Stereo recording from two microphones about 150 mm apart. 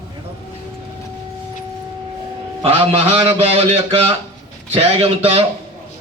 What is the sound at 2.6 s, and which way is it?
A man's voice, 40° right (ahead or behind).